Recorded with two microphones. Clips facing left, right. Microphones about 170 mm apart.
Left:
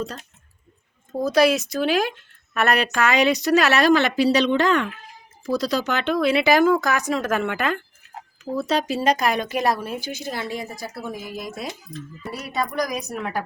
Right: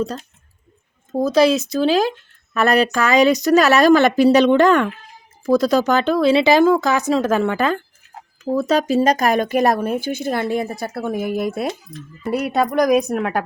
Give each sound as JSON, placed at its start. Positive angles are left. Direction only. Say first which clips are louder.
{"t": 1.2, "sound": "speech", "louder": "right 3 dB", "side_deg": -25}
{"t": 8.5, "sound": "speech", "louder": "right 6 dB", "side_deg": -45}